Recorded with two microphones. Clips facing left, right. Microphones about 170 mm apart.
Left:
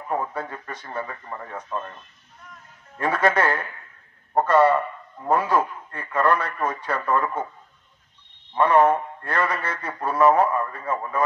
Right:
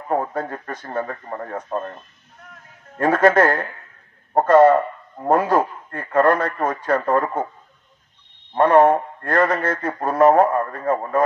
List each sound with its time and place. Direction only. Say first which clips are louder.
0.1 s a man's voice: right 5 dB; 50° right (ahead or behind)
8.5 s a man's voice: right 4 dB; 50° right (ahead or behind)